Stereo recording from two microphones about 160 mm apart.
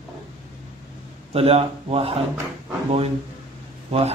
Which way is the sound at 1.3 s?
40° right (ahead or behind).